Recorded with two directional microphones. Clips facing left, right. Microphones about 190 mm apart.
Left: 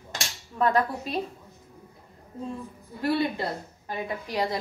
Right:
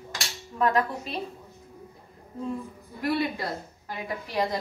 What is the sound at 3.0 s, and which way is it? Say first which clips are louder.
Speech: left 1 dB; 30° left (ahead or behind).